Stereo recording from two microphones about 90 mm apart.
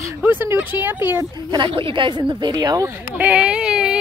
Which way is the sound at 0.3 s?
25° right (ahead or behind).